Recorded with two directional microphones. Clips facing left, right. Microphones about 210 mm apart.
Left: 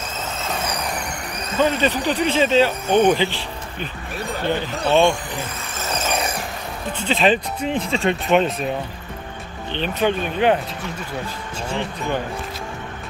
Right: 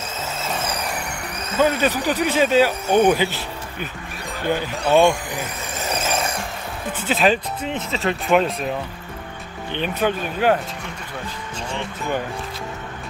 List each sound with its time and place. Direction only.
1.6 s speech: 10° right (ahead or behind)
6.9 s speech: 5° right (ahead or behind)
7.8 s speech: 30° left (ahead or behind)
8.3 s speech: centre (ahead or behind)
9.7 s speech: 10° right (ahead or behind)